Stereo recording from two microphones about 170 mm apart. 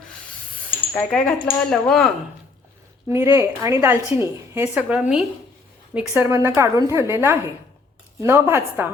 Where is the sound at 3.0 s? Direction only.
15° right (ahead or behind).